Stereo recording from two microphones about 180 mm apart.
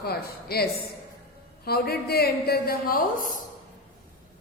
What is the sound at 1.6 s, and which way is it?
A man's voice, 60° left (ahead or behind).